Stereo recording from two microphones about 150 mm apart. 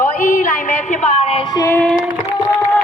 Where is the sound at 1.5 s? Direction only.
25° left (ahead or behind).